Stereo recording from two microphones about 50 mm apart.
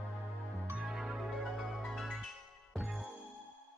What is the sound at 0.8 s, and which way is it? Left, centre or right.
Music, centre.